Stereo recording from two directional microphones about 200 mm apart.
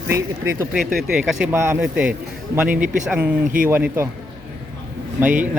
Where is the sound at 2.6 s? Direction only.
40° right (ahead or behind).